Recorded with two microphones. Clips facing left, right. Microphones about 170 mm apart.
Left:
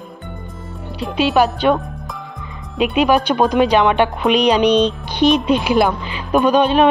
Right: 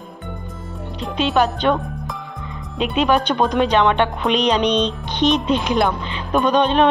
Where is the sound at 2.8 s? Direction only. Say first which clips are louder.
Left 3 dB; 10° left (ahead or behind).